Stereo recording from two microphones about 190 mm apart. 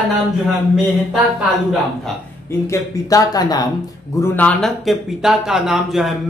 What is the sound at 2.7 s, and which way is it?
Speech, 20° left (ahead or behind).